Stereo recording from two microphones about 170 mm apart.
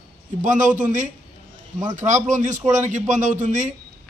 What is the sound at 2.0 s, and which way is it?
A man's voice, 45° right (ahead or behind).